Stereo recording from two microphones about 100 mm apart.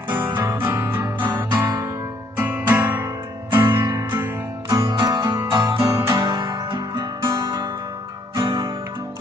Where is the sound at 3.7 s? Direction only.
40° right (ahead or behind).